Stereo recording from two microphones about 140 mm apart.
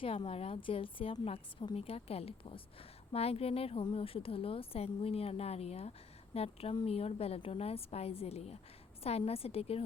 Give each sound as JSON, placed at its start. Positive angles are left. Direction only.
{"t": 0.3, "sound": "a woman's voice", "side_deg": 45}